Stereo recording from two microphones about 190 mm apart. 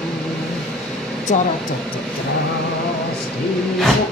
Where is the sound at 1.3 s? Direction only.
40° left (ahead or behind).